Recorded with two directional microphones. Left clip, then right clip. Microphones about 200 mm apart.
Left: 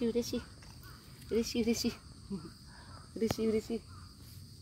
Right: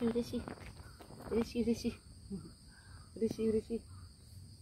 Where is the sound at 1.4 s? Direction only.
40° left (ahead or behind).